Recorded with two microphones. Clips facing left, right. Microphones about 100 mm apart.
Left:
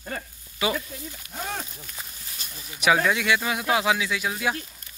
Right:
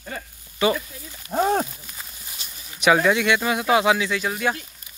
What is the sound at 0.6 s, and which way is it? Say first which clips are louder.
Speech: right 6 dB; 5° left (ahead or behind).